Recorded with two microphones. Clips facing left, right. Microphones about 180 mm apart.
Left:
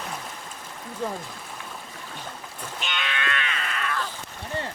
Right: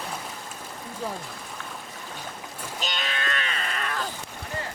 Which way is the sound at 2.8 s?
40° right (ahead or behind).